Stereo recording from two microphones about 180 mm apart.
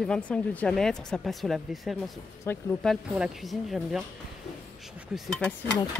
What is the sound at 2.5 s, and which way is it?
Speech, 15° left (ahead or behind).